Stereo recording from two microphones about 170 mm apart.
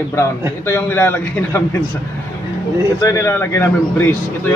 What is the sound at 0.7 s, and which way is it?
A man's voice, 10° left (ahead or behind).